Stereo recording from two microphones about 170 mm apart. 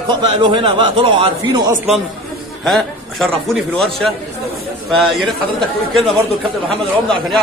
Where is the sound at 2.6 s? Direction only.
Centre (ahead or behind).